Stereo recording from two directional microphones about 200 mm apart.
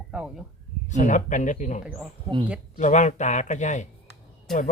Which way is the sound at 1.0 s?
40° left (ahead or behind).